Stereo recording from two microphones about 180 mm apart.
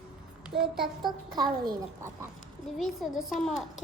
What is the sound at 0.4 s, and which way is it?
Speech, centre (ahead or behind).